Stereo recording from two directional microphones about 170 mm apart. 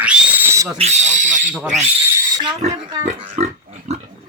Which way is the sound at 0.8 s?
40° right (ahead or behind).